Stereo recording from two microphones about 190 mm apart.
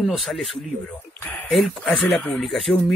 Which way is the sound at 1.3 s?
Centre (ahead or behind).